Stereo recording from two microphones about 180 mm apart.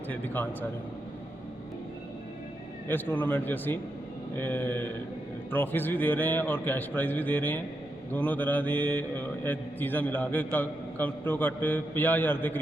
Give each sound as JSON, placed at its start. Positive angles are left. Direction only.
{"t": 2.8, "sound": "speech", "side_deg": 10}